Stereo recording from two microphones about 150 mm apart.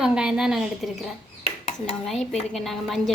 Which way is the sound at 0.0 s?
5° right (ahead or behind).